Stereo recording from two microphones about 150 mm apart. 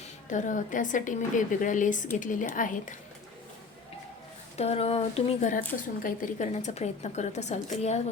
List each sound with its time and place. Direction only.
0.3 s a woman's voice: 55° left (ahead or behind)
4.5 s a woman's voice: 45° left (ahead or behind)